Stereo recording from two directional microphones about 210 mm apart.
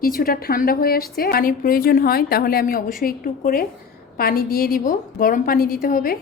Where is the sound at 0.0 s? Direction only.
45° left (ahead or behind).